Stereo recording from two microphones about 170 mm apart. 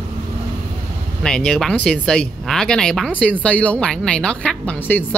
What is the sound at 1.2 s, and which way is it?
Speech, 5° left (ahead or behind).